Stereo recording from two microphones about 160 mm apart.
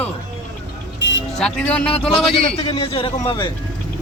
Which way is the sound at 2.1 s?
35° left (ahead or behind).